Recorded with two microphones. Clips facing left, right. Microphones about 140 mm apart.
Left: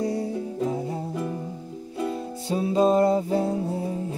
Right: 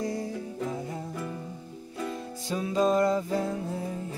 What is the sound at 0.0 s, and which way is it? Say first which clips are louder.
Music: left 5 dB; 30° left (ahead or behind).